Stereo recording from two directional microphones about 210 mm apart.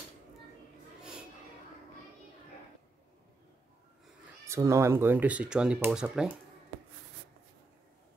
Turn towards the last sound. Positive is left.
turn(degrees=-5)  # may be behind; listen again after turning